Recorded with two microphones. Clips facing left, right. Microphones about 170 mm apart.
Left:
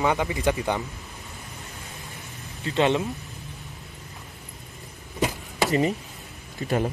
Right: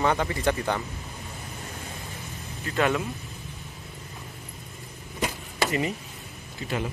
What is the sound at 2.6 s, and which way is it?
Speech, 25° left (ahead or behind).